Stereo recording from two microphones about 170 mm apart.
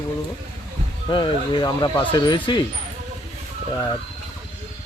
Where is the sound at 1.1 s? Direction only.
25° left (ahead or behind).